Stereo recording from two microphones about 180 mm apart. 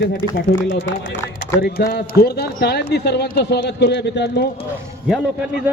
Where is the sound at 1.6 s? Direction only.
60° left (ahead or behind).